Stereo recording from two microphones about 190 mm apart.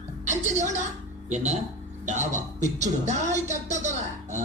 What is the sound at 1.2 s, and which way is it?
Speech, 40° right (ahead or behind).